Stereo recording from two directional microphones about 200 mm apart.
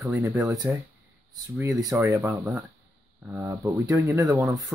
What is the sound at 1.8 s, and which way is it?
Speech, 10° right (ahead or behind).